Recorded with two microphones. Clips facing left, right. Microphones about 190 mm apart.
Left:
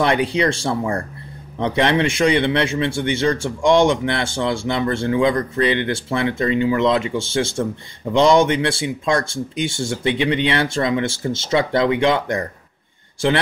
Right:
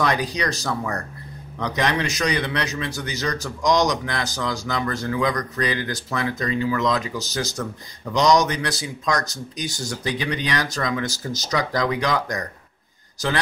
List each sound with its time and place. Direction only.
0.0 s a man's voice: 25° left (ahead or behind)